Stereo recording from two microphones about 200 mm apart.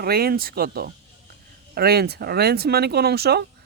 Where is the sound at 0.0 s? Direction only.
50° right (ahead or behind).